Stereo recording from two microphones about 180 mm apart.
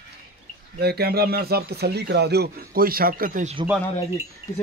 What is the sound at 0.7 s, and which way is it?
Speech, 60° right (ahead or behind).